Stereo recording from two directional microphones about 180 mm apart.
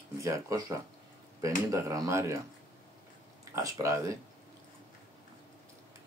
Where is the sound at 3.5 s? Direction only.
15° right (ahead or behind).